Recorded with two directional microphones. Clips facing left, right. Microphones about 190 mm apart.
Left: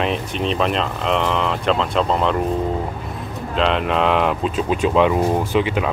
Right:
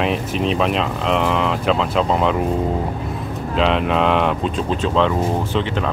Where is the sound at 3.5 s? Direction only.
Centre (ahead or behind).